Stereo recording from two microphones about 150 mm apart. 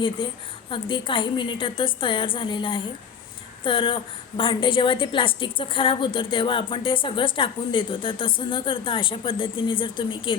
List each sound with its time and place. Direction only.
0.2 s speech: 35° left (ahead or behind)